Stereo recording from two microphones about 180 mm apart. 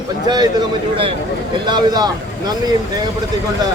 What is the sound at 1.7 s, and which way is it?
Speech, 25° right (ahead or behind).